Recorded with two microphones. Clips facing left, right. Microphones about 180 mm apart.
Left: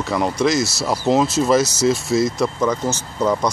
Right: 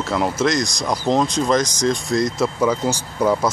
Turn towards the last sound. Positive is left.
turn(degrees=-10)  # may be behind; listen again after turning